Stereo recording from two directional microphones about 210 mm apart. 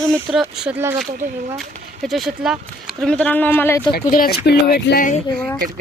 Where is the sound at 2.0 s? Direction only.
Centre (ahead or behind).